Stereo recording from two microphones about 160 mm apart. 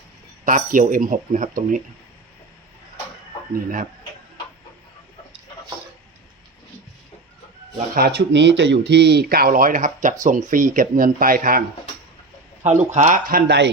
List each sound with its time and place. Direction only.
0.4 s speech: 55° right (ahead or behind)
3.5 s speech: 60° right (ahead or behind)
7.9 s speech: 85° right; by 11.6 s 60° right (ahead or behind)
12.6 s speech: 45° right (ahead or behind); by 13.7 s 75° right (ahead or behind)